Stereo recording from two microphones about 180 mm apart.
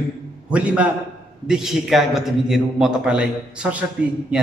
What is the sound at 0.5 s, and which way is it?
A man's voice, 5° right (ahead or behind).